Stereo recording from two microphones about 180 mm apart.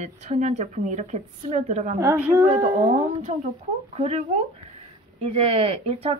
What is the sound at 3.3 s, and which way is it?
Speech, 40° right (ahead or behind).